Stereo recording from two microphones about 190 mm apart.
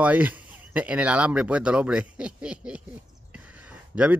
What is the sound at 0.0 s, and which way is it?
A man's voice, 10° right (ahead or behind).